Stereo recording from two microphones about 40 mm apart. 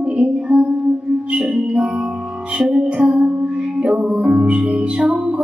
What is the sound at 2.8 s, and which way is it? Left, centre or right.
Music, right.